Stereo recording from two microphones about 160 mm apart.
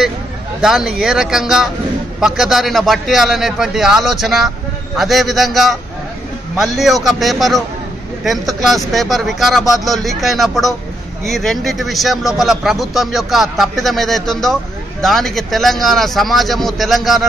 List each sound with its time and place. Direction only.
0.6 s a man's voice: 5° right (ahead or behind)